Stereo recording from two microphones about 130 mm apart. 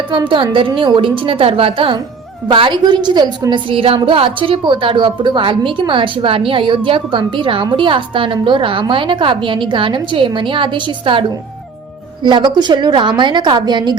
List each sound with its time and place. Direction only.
0.1 s a woman's voice: 40° right (ahead or behind)